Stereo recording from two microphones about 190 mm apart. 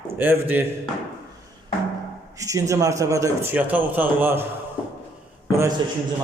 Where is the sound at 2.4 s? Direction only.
15° right (ahead or behind).